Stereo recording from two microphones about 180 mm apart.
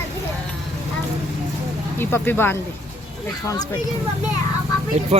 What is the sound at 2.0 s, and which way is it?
Speech, 10° left (ahead or behind).